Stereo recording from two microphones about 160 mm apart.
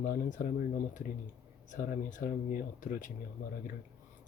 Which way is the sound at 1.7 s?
55° left (ahead or behind).